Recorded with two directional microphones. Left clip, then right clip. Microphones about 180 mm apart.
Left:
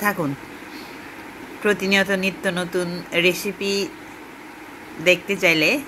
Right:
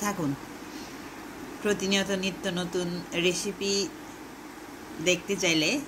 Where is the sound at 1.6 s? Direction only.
20° left (ahead or behind).